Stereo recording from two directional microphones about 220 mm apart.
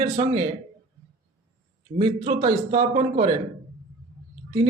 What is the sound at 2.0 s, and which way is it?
A man's voice, 25° right (ahead or behind).